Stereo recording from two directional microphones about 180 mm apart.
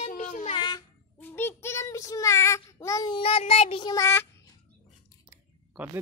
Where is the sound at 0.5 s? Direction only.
25° left (ahead or behind).